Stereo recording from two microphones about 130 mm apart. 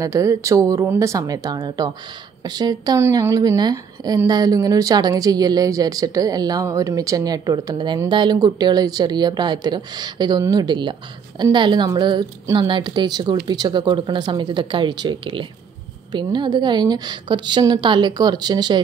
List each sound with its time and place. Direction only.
0.0 s speech: 25° right (ahead or behind)